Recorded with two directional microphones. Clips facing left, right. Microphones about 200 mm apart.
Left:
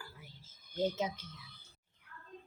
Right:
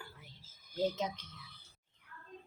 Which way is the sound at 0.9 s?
5° left (ahead or behind).